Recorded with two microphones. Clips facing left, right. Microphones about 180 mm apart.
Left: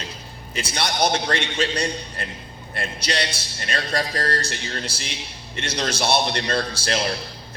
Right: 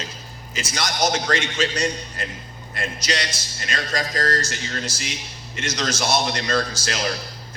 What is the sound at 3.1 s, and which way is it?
A man's voice, 30° left (ahead or behind).